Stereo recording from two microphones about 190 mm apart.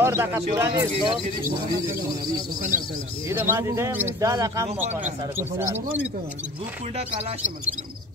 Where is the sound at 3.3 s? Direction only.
15° right (ahead or behind).